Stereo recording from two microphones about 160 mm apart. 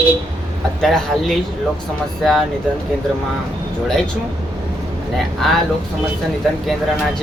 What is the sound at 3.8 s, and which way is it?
Speech, 5° left (ahead or behind).